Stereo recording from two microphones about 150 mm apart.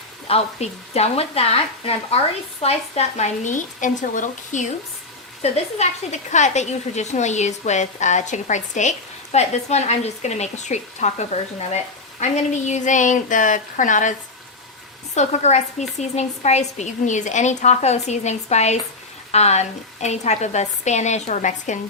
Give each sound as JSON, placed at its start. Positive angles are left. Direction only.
{"t": 0.3, "sound": "speech", "side_deg": 45}
{"t": 5.4, "sound": "speech", "side_deg": 45}